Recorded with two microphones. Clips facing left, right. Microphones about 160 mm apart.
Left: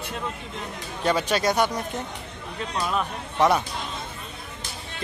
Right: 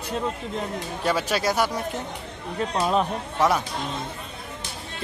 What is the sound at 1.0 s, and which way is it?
Speech, 5° right (ahead or behind).